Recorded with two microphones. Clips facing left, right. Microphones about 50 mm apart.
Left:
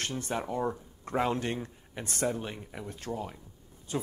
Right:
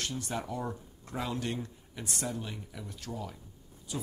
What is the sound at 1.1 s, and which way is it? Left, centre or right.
Speech, left.